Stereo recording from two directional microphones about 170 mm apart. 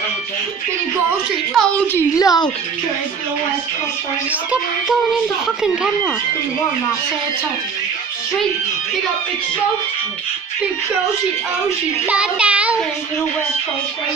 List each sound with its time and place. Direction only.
1.5 s a woman's voice: 5° left (ahead or behind)
2.1 s speech: 20° left (ahead or behind)
4.3 s a woman's voice: 10° right (ahead or behind)
12.1 s speech: 5° right (ahead or behind)